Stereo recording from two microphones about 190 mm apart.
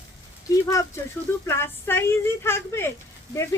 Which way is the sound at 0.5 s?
15° left (ahead or behind).